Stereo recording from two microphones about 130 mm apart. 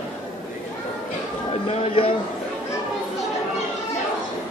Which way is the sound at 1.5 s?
45° left (ahead or behind).